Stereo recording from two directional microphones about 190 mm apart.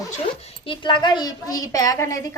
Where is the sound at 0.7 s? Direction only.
25° left (ahead or behind).